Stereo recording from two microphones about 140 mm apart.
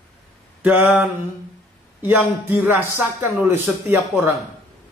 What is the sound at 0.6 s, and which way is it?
Speech, 10° right (ahead or behind).